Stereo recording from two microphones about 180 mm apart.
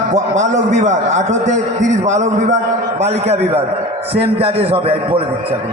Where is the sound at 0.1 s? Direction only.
40° right (ahead or behind).